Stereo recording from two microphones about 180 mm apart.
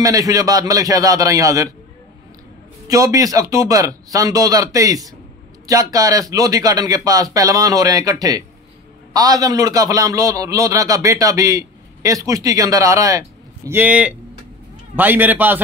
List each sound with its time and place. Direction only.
0.0 s a man's voice: 20° right (ahead or behind)
2.9 s a man's voice: 20° right (ahead or behind)